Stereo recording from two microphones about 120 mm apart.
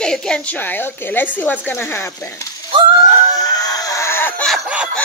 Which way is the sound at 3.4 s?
30° left (ahead or behind).